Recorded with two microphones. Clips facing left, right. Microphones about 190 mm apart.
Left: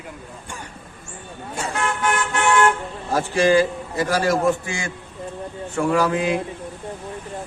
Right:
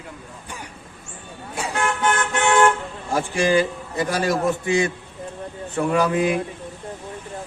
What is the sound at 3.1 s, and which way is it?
Speech, 15° right (ahead or behind).